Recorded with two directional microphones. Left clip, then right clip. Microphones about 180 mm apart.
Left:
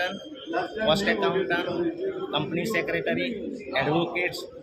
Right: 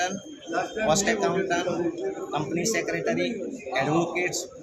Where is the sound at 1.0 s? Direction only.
Centre (ahead or behind).